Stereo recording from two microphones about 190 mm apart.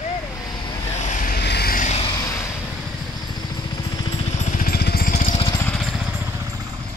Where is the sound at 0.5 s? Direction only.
20° left (ahead or behind).